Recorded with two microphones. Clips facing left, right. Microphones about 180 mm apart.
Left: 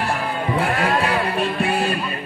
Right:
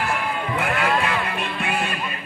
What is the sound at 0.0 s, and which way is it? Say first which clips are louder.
Music: left 2 dB; 35° left (ahead or behind).